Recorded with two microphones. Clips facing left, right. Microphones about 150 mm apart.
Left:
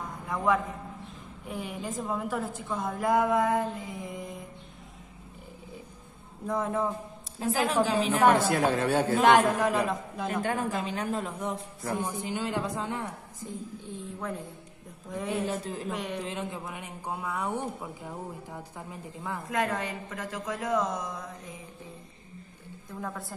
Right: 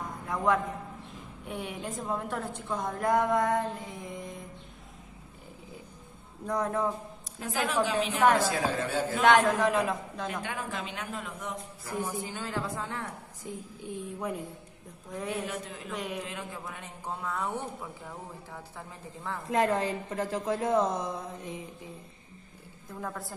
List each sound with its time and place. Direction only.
0.3 s a man's voice: centre (ahead or behind)
6.4 s a woman's voice: centre (ahead or behind)
7.4 s a man's voice: 30° left (ahead or behind)
8.4 s a woman's voice: 65° left (ahead or behind)
9.2 s a woman's voice: centre (ahead or behind)
10.4 s a man's voice: 45° left (ahead or behind)
12.0 s a woman's voice: 15° left (ahead or behind)
13.4 s a woman's voice: 15° right (ahead or behind)
15.0 s a woman's voice: centre (ahead or behind)
15.4 s a man's voice: 30° left (ahead or behind)
15.9 s a woman's voice: centre (ahead or behind)
16.3 s a woman's voice: 20° left (ahead or behind)
19.5 s a woman's voice: 30° right (ahead or behind)
22.8 s a woman's voice: centre (ahead or behind)